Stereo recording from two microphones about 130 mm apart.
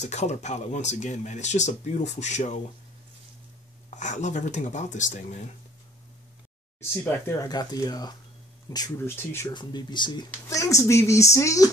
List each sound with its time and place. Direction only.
0.0 s speech: 60° left (ahead or behind)
3.9 s speech: 65° left (ahead or behind)
7.3 s speech: 30° left (ahead or behind)
9.5 s speech: 35° left (ahead or behind)
10.6 s speech: 25° left (ahead or behind)